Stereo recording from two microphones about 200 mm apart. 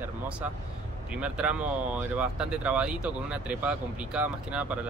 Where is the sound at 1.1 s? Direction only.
5° right (ahead or behind).